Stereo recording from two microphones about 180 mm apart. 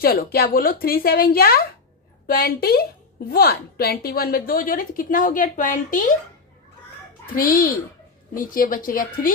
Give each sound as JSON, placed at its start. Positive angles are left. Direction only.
{"t": 0.0, "sound": "a woman's voice", "side_deg": 55}
{"t": 7.3, "sound": "a woman's voice", "side_deg": 50}